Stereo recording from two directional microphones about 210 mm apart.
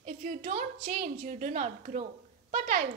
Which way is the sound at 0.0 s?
40° right (ahead or behind).